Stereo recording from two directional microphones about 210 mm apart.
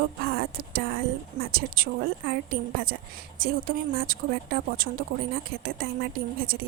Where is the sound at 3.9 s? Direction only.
45° right (ahead or behind).